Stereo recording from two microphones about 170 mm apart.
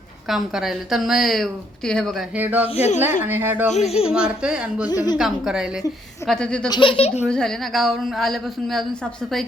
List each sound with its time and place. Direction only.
0.3 s a woman's voice: centre (ahead or behind)
2.3 s speech: 10° right (ahead or behind)
2.7 s speech: 40° left (ahead or behind)
3.2 s speech: 10° right (ahead or behind)
3.7 s speech: 40° left (ahead or behind)
4.1 s a woman's voice: 5° right (ahead or behind)
4.9 s a woman's voice: 25° left (ahead or behind)
5.1 s a woman's voice: 5° right (ahead or behind)
6.7 s speech: 30° left (ahead or behind)
7.3 s a woman's voice: 5° left (ahead or behind)